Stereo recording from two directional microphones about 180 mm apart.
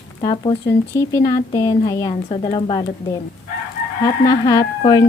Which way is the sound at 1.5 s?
20° left (ahead or behind).